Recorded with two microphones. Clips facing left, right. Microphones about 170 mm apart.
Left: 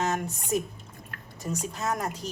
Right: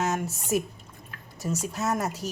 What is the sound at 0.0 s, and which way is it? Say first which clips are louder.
Speech: right 1 dB; 5° right (ahead or behind).